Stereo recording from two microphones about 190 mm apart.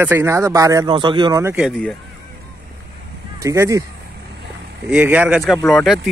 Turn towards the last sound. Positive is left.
turn(degrees=0)  # may be behind; listen again after turning